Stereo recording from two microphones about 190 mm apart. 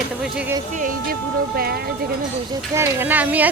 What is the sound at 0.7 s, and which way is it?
Speech, 45° right (ahead or behind).